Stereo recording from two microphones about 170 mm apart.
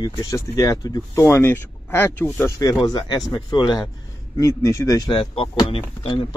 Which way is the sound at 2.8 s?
25° left (ahead or behind).